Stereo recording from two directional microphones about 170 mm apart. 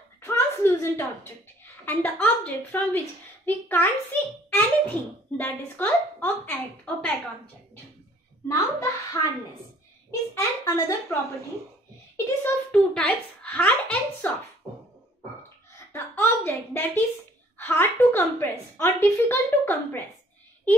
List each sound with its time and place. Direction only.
0.2 s a sound: 15° left (ahead or behind)
1.9 s a woman's voice: 10° left (ahead or behind)
4.5 s a sound: 10° left (ahead or behind)
5.4 s a woman's voice: 10° left (ahead or behind)
8.5 s a woman's voice: 15° left (ahead or behind)
10.3 s a woman's voice: 20° left (ahead or behind)
12.4 s a woman's voice: 5° left (ahead or behind)
15.9 s a woman's voice: 15° left (ahead or behind)